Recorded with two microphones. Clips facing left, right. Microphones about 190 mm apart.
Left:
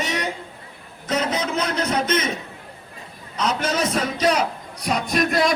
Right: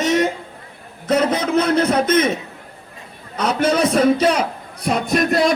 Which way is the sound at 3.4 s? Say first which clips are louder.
Right 5 dB; 55° right (ahead or behind).